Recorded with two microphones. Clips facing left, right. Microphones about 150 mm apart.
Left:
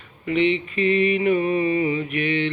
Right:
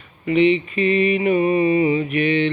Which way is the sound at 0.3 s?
10° right (ahead or behind).